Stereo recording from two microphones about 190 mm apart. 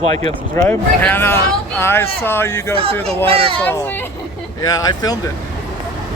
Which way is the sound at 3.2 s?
30° right (ahead or behind).